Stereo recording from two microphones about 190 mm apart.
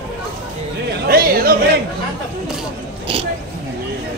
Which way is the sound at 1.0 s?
50° right (ahead or behind).